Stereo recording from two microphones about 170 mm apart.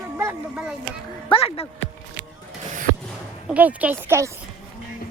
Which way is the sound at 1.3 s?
35° left (ahead or behind).